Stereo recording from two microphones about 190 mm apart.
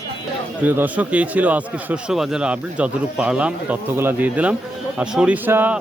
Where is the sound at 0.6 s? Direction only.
10° right (ahead or behind).